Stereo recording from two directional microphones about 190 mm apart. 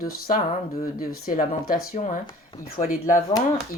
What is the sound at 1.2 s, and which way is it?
Speech, 50° left (ahead or behind).